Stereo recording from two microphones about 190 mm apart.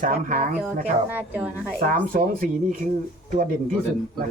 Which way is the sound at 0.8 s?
10° right (ahead or behind).